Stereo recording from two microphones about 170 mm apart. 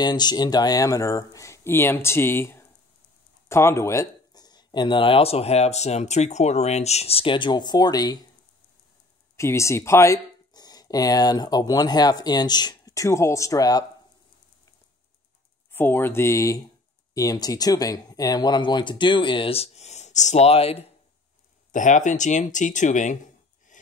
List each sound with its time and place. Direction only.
0.0 s speech: 25° left (ahead or behind)
9.4 s speech: 15° left (ahead or behind)
15.7 s speech: 10° left (ahead or behind); by 20.8 s 35° left (ahead or behind)
21.7 s speech: 45° left (ahead or behind)